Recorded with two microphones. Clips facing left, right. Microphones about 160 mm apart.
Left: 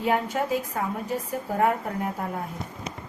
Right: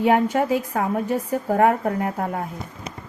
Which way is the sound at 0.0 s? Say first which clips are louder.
Right 6 dB; 60° right (ahead or behind).